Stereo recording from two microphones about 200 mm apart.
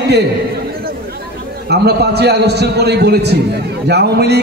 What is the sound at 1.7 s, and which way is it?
A man's voice, 55° right (ahead or behind).